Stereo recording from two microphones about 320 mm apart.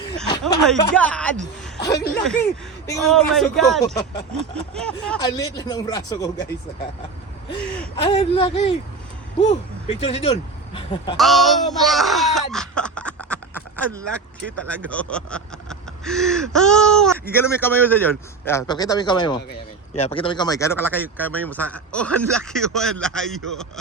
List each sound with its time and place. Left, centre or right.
0.4 s a man's voice: centre
3.8 s a man's voice: centre
4.7 s a man's voice: centre
7.9 s a man's voice: centre
11.2 s a sound: centre
14.7 s a man's voice: centre